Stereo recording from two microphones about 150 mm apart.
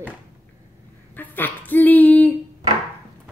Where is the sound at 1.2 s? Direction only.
10° left (ahead or behind).